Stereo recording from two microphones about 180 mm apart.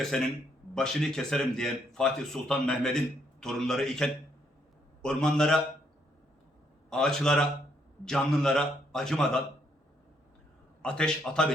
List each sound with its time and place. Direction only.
0.0 s speech: centre (ahead or behind)
6.9 s speech: 5° left (ahead or behind)
10.8 s speech: 5° left (ahead or behind)